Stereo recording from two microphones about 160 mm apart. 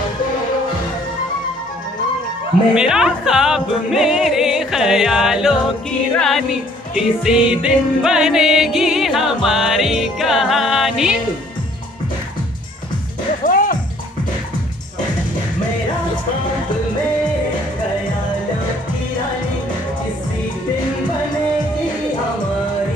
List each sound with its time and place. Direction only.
2.7 s music: 5° right (ahead or behind)
13.4 s music: 60° left (ahead or behind)